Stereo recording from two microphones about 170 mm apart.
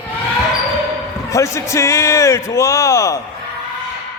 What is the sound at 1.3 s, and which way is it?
A man's voice, 15° left (ahead or behind).